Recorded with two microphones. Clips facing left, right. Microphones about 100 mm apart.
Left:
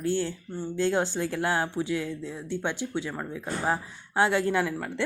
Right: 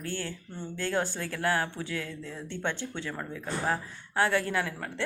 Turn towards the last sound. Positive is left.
turn(degrees=20)  # may be behind; listen again after turning